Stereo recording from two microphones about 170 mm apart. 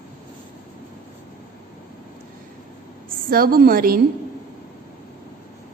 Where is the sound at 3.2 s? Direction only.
60° right (ahead or behind).